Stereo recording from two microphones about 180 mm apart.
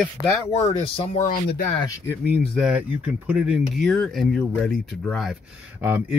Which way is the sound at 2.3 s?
5° right (ahead or behind).